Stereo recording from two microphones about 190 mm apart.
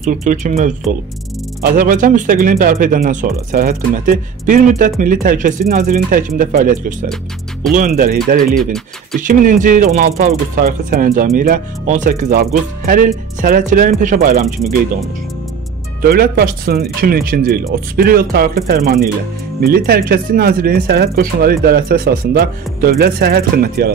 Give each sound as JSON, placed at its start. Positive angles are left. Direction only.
{"t": 0.0, "sound": "speech", "side_deg": -45}
{"t": 16.0, "sound": "speech", "side_deg": -55}